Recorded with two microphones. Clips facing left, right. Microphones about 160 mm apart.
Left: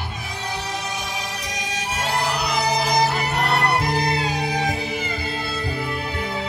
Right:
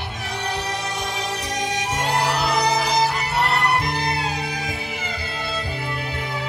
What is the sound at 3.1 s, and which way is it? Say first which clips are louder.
Music: even; 35° left (ahead or behind).